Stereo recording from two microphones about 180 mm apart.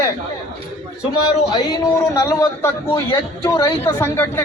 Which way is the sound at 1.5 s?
20° left (ahead or behind).